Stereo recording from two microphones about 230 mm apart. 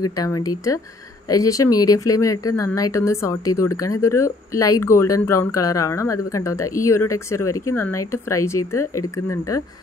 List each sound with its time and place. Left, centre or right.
0.2 s speech: centre